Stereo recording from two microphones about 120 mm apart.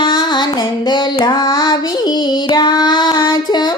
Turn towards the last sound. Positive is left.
turn(degrees=35)  # may be behind; listen again after turning